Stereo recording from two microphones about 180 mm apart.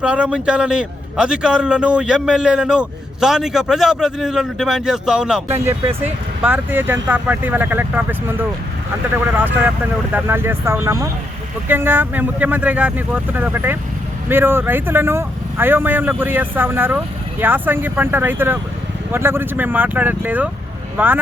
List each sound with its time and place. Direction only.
0.0 s a man's voice: 5° right (ahead or behind)
9.6 s speech: 10° right (ahead or behind)